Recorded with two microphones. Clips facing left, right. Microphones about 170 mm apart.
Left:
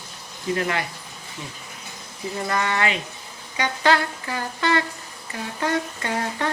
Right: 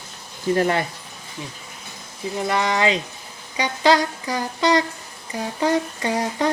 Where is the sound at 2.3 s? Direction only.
15° right (ahead or behind).